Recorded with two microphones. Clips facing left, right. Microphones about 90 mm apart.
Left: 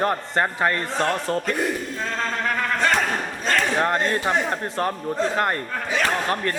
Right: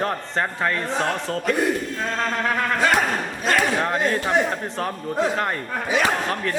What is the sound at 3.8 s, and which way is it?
A man's voice, centre (ahead or behind).